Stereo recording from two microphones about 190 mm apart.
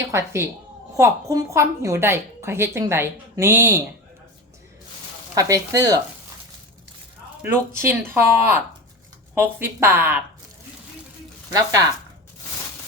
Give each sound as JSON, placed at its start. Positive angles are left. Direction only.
{"t": 0.1, "sound": "a woman's voice", "side_deg": -15}
{"t": 5.3, "sound": "speech", "side_deg": -20}
{"t": 7.4, "sound": "a woman's voice", "side_deg": -15}
{"t": 11.5, "sound": "speech", "side_deg": -20}